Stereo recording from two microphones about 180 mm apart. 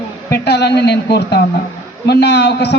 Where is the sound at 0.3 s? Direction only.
70° left (ahead or behind).